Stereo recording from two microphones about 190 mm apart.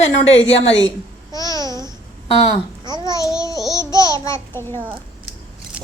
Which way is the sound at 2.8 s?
20° right (ahead or behind).